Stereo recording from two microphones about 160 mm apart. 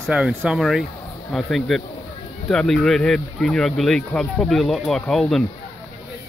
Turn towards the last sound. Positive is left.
turn(degrees=0)  # may be behind; listen again after turning